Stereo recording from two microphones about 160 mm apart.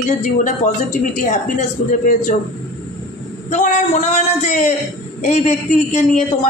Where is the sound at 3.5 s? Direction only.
50° left (ahead or behind).